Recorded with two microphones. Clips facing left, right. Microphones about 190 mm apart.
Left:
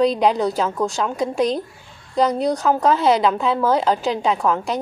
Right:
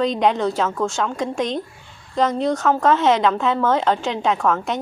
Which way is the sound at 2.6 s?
5° left (ahead or behind).